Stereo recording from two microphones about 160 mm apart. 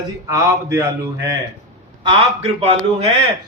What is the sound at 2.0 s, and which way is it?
A man's voice, 35° right (ahead or behind).